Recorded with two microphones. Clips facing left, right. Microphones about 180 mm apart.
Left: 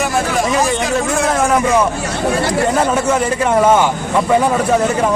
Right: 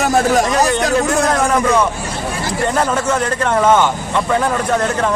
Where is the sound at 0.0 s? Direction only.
40° right (ahead or behind).